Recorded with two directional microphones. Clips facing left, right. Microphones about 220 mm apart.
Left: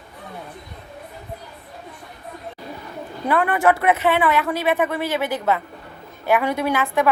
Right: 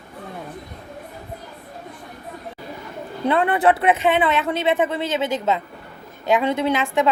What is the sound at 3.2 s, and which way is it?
Speech, 20° right (ahead or behind).